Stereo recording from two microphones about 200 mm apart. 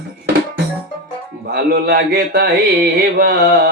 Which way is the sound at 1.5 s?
50° right (ahead or behind).